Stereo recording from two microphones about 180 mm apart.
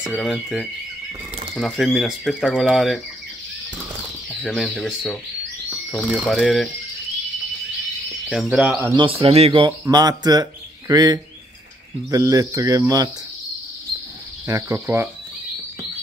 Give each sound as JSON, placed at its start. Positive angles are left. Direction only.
{"t": 0.0, "sound": "speech", "side_deg": 0}
{"t": 4.3, "sound": "speech", "side_deg": 0}
{"t": 8.3, "sound": "speech", "side_deg": 0}
{"t": 8.8, "sound": "speech", "side_deg": -25}
{"t": 14.4, "sound": "cricket", "side_deg": -15}